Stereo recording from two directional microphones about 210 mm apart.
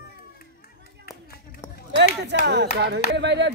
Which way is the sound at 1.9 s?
55° right (ahead or behind).